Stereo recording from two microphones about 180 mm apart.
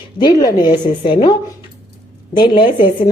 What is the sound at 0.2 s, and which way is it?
A woman's voice, 20° left (ahead or behind).